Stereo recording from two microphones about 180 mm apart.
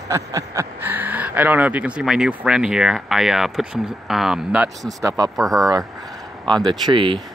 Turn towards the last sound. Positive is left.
turn(degrees=-25)  # may be behind; listen again after turning